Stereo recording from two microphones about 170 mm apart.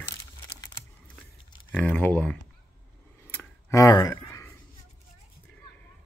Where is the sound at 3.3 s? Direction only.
15° left (ahead or behind).